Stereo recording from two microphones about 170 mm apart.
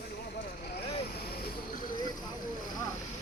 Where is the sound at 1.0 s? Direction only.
60° left (ahead or behind).